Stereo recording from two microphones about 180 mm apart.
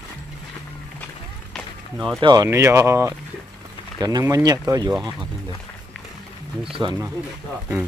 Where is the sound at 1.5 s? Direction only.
Centre (ahead or behind).